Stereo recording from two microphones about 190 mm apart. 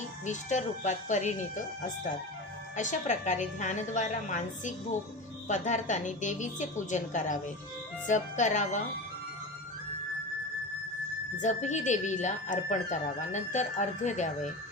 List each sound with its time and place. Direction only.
0.3 s speech: 40° left (ahead or behind)
11.3 s speech: 40° left (ahead or behind)